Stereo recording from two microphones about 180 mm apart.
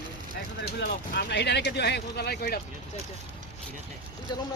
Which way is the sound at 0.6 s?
60° left (ahead or behind).